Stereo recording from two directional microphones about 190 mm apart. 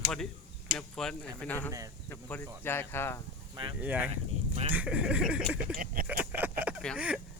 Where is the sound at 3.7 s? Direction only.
10° right (ahead or behind).